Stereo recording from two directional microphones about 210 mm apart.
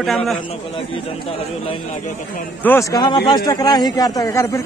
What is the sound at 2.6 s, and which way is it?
Speech, 10° left (ahead or behind).